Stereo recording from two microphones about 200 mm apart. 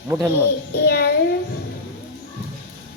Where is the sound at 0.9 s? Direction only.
55° left (ahead or behind).